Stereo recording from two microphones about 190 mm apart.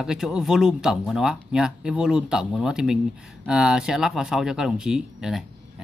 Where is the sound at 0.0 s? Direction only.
5° right (ahead or behind).